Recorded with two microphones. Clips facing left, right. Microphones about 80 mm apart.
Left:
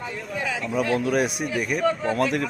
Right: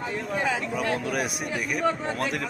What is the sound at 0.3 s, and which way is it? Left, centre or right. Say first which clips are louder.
Speech: right 2 dB; right.